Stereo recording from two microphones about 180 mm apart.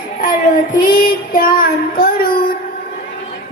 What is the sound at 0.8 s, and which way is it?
Child singing, 55° left (ahead or behind).